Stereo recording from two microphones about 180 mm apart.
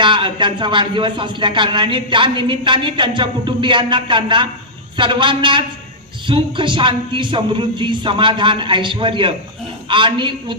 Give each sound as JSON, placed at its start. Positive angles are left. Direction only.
{"t": 0.0, "sound": "speech", "side_deg": -25}